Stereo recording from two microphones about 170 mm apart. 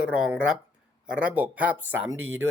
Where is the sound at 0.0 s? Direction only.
5° right (ahead or behind).